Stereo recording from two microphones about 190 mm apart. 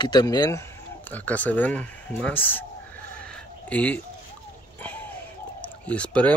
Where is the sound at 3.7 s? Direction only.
5° left (ahead or behind).